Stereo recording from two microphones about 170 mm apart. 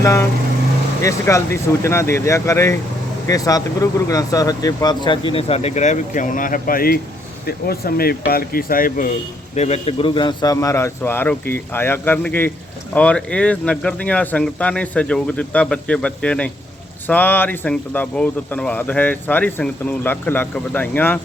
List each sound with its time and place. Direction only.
0.0 s speech: 15° left (ahead or behind); by 9.1 s 55° left (ahead or behind)
9.6 s speech: 40° left (ahead or behind); by 21.2 s 10° left (ahead or behind)